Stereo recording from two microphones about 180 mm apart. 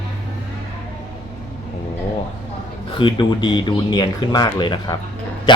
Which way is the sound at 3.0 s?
25° left (ahead or behind).